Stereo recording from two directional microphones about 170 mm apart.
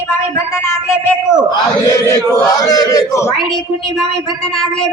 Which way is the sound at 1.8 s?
20° left (ahead or behind).